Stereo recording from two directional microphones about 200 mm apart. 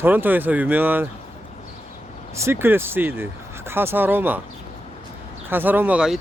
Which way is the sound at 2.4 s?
10° right (ahead or behind).